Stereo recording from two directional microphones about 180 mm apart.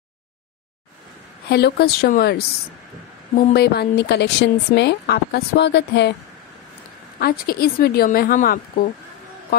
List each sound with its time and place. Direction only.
1.5 s a woman's voice: 65° left (ahead or behind)
7.2 s a woman's voice: 55° left (ahead or behind)